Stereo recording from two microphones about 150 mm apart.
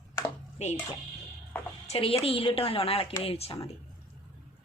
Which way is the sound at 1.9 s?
40° left (ahead or behind).